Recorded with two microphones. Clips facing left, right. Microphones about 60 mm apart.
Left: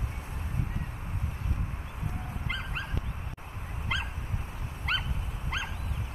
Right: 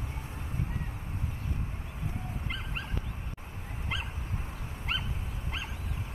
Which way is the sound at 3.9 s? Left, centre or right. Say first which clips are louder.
Left 4 dB; left.